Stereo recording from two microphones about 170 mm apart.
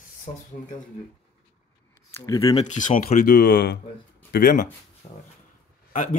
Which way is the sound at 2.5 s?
45° left (ahead or behind).